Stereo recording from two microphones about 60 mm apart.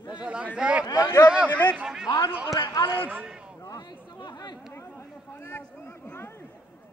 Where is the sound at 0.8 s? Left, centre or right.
Left.